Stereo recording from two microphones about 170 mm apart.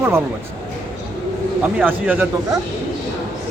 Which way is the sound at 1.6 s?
10° right (ahead or behind).